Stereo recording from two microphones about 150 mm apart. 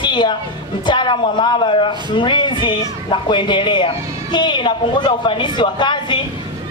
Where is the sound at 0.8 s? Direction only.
30° left (ahead or behind).